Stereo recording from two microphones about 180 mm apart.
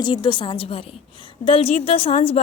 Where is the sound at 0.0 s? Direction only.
25° left (ahead or behind).